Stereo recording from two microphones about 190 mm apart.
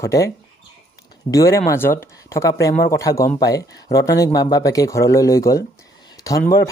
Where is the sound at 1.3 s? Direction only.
15° left (ahead or behind).